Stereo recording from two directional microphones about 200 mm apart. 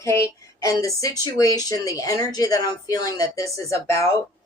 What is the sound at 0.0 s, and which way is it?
Music, 15° left (ahead or behind).